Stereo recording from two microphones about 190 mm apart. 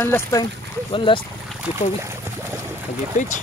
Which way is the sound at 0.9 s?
25° left (ahead or behind).